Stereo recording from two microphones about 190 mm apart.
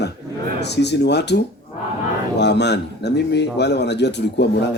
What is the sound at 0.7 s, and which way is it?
Speech, 65° left (ahead or behind).